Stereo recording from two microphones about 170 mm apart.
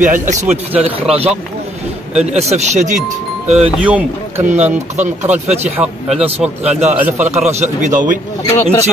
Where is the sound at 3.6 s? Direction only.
5° right (ahead or behind).